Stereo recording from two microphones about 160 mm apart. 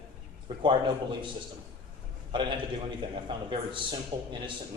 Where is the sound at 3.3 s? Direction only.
30° right (ahead or behind).